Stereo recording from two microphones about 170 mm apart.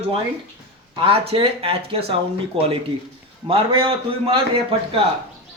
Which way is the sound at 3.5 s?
30° right (ahead or behind).